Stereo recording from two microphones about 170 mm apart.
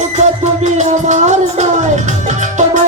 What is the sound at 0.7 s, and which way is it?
Music, 45° right (ahead or behind).